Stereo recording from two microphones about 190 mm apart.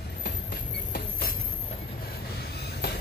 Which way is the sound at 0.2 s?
50° left (ahead or behind).